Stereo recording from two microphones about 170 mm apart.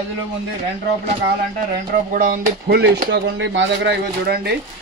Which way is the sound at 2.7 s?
90° right.